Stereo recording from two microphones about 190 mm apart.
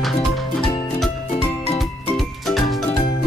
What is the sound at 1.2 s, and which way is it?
Music, 30° left (ahead or behind).